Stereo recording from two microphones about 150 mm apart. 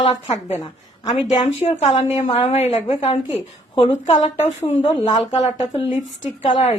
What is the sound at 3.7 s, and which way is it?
A woman's voice, 40° left (ahead or behind).